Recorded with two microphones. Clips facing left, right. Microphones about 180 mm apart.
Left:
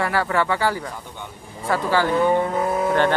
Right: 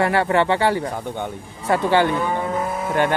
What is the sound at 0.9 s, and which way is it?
Speech, 55° right (ahead or behind).